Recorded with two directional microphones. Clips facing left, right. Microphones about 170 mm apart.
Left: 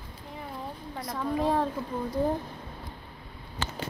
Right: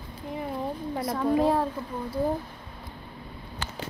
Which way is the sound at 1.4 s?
10° right (ahead or behind).